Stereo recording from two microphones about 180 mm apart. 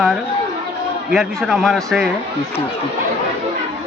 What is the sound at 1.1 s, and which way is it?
Speech, centre (ahead or behind).